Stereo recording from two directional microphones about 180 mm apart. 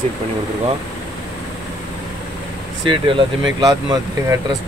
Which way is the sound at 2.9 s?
25° right (ahead or behind).